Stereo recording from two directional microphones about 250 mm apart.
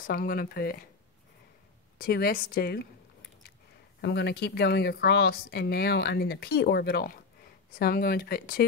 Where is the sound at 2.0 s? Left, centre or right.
Left.